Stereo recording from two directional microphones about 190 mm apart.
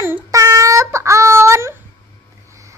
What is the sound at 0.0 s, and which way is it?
Child singing, 15° right (ahead or behind).